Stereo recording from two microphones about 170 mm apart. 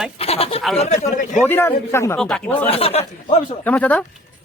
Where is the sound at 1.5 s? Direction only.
15° left (ahead or behind).